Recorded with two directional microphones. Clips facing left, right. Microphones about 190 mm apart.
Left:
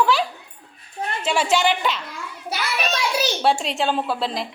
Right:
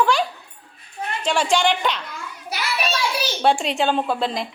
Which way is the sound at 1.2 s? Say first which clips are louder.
Even; 5° left (ahead or behind).